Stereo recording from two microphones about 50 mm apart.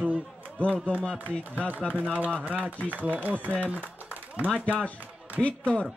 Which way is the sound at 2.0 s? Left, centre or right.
Right.